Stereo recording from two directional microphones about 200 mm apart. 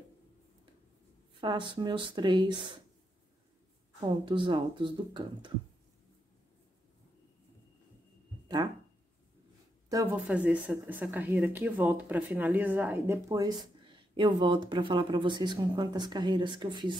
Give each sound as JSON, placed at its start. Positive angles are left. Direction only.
{"t": 1.4, "sound": "speech", "side_deg": -25}
{"t": 4.0, "sound": "speech", "side_deg": -25}
{"t": 10.2, "sound": "speech", "side_deg": -5}